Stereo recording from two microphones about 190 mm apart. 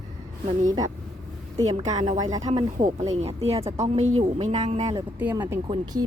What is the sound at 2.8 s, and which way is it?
Speech, 35° right (ahead or behind).